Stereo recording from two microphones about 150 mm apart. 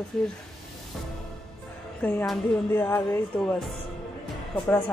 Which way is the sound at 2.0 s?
10° left (ahead or behind).